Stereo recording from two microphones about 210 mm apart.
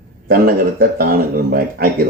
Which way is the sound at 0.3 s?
45° right (ahead or behind).